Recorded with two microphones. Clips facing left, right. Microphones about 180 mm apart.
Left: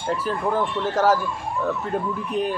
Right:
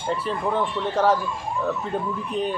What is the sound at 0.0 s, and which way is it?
Speech, centre (ahead or behind).